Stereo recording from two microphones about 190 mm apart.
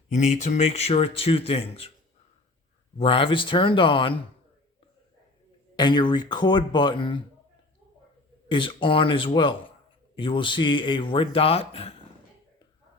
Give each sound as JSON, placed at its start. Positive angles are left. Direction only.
{"t": 0.1, "sound": "speech", "side_deg": 40}
{"t": 3.0, "sound": "a man's voice", "side_deg": 30}
{"t": 5.7, "sound": "a man's voice", "side_deg": 25}
{"t": 8.4, "sound": "a man's voice", "side_deg": 25}